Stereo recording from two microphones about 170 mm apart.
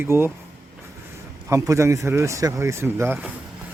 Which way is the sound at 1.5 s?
15° right (ahead or behind).